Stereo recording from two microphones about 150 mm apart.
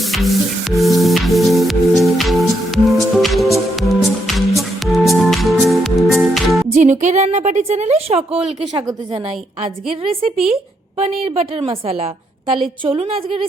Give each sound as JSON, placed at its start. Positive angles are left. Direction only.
{"t": 0.1, "sound": "music", "side_deg": 0}
{"t": 6.7, "sound": "a woman's voice", "side_deg": -50}
{"t": 10.0, "sound": "a woman's voice", "side_deg": -40}